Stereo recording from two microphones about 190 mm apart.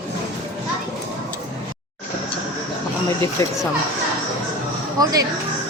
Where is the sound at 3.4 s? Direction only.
15° left (ahead or behind).